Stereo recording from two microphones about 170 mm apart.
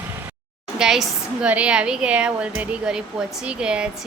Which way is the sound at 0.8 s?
5° right (ahead or behind).